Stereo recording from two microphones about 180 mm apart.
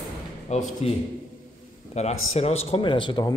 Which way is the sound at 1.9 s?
35° left (ahead or behind).